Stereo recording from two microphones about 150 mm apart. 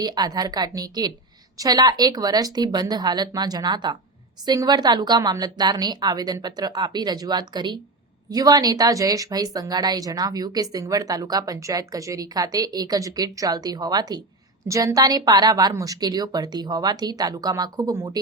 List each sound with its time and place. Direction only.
0.0 s a woman's voice: 25° right (ahead or behind)